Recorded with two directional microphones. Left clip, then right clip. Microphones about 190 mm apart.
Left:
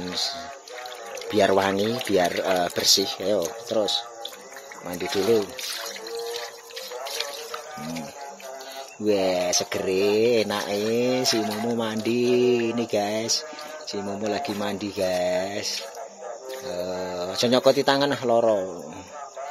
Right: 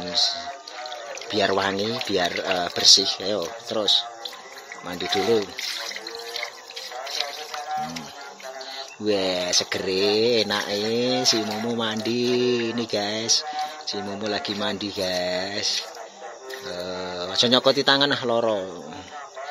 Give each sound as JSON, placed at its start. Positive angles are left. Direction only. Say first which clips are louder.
{"t": 0.1, "sound": "speech", "louder": "right 7 dB", "side_deg": 20}
{"t": 9.0, "sound": "speech", "louder": "left 1 dB", "side_deg": 10}
{"t": 12.4, "sound": "music", "louder": "left 2 dB", "side_deg": 10}
{"t": 14.2, "sound": "speech", "louder": "right 1 dB", "side_deg": 10}
{"t": 16.8, "sound": "speech", "louder": "left 1 dB", "side_deg": 10}